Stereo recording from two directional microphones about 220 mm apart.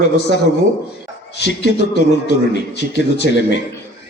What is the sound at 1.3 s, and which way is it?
A man's voice, 50° left (ahead or behind).